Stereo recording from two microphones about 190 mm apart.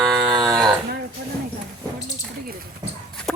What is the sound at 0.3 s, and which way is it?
Livestock, 20° right (ahead or behind).